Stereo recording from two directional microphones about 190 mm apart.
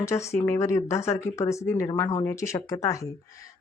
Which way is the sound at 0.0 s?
15° left (ahead or behind).